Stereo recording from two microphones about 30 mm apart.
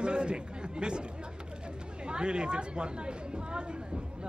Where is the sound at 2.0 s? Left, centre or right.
Right.